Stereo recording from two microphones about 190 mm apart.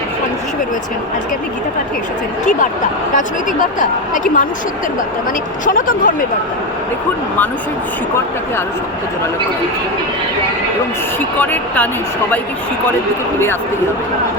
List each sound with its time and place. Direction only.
3.2 s speech: 45° left (ahead or behind)
5.6 s speech: 45° left (ahead or behind)
11.3 s speech: 10° left (ahead or behind)